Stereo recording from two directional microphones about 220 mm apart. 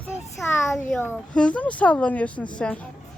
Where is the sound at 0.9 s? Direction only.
10° left (ahead or behind).